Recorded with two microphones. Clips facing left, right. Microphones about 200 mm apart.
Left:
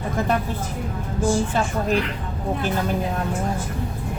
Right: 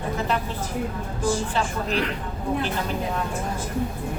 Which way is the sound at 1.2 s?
50° left (ahead or behind).